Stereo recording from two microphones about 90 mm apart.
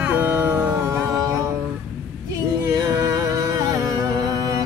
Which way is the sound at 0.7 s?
35° right (ahead or behind).